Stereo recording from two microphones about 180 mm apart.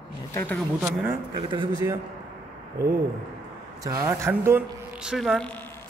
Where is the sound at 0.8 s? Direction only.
10° right (ahead or behind).